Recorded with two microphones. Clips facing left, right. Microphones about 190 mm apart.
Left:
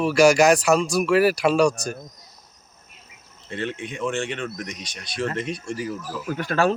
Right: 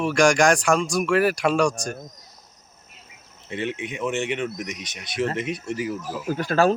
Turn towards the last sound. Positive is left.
turn(degrees=-40)  # may be behind; listen again after turning